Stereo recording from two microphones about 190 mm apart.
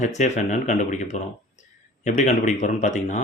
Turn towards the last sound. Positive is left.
turn(degrees=40)  # may be behind; listen again after turning